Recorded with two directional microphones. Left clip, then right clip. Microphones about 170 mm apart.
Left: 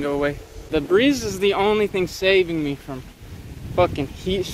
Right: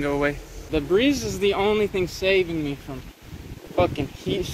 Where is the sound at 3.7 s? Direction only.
20° left (ahead or behind).